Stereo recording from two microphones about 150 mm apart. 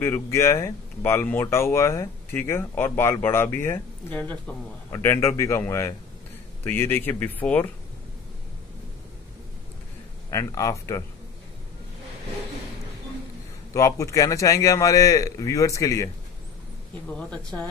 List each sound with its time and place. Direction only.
0.0 s a man's voice: 15° left (ahead or behind)
10.3 s a man's voice: 20° left (ahead or behind)
13.7 s a man's voice: 20° left (ahead or behind)
17.1 s speech: 5° left (ahead or behind)